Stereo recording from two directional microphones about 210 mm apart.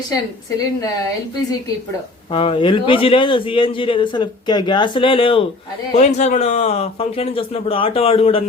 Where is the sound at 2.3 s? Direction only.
25° left (ahead or behind).